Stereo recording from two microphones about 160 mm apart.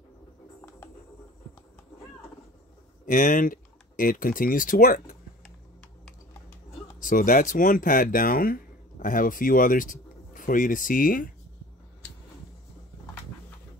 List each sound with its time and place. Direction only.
0.6 s music: 15° left (ahead or behind)
3.1 s speech: 55° left (ahead or behind)
7.0 s speech: 55° left (ahead or behind)